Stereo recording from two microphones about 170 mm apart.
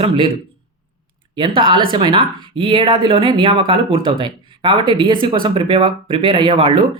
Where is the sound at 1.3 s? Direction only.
30° right (ahead or behind).